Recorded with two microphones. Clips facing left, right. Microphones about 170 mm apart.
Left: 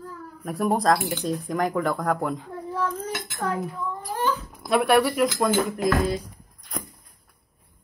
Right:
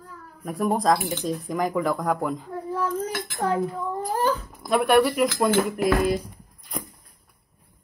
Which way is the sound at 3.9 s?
40° right (ahead or behind).